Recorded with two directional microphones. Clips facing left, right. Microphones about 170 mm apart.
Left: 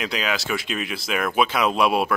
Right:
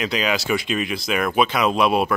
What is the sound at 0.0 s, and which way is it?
Speech, centre (ahead or behind).